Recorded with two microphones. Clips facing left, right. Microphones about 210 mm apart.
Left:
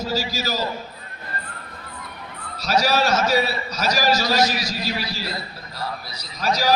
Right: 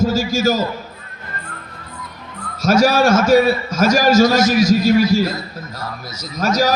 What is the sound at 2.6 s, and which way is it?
A man's voice, 50° right (ahead or behind).